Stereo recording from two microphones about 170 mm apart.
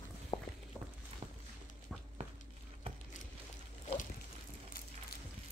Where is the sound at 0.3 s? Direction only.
40° left (ahead or behind).